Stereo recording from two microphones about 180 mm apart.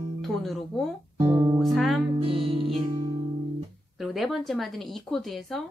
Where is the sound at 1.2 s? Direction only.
15° right (ahead or behind).